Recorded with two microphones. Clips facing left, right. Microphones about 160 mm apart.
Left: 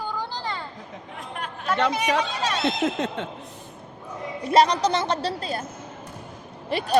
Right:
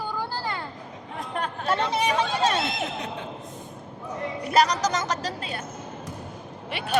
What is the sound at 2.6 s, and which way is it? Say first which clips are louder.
Speech: left 6 dB; 75° left (ahead or behind).